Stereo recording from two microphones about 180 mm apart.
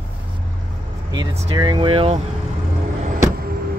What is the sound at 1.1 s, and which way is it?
Speech, 25° right (ahead or behind).